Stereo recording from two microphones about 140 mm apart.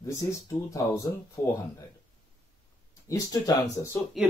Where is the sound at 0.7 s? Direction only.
25° left (ahead or behind).